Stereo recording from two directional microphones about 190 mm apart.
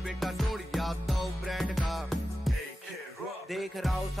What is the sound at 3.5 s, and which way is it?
Music, centre (ahead or behind).